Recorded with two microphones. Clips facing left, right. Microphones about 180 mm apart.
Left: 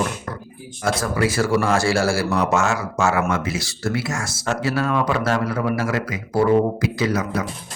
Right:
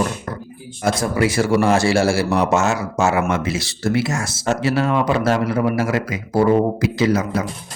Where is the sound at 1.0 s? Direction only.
20° right (ahead or behind).